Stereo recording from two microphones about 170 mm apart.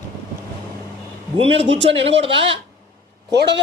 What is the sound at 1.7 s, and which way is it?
Speech, 35° right (ahead or behind).